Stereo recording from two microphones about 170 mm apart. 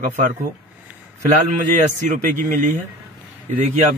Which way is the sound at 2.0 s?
50° right (ahead or behind).